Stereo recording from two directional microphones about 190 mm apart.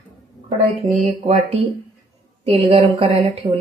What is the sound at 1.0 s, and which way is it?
A woman's voice, 35° right (ahead or behind).